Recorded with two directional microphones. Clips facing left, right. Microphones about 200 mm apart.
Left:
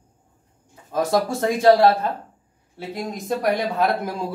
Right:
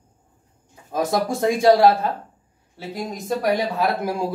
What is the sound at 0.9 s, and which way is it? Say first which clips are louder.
A man's voice: left 1 dB; 15° right (ahead or behind).